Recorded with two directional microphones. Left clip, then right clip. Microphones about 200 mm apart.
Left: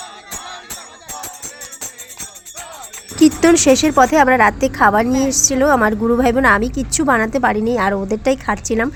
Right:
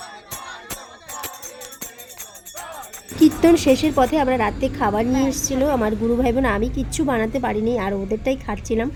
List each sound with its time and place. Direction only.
3.2 s a woman's voice: 20° left (ahead or behind)